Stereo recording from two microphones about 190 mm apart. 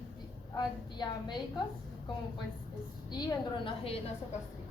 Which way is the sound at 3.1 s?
20° left (ahead or behind).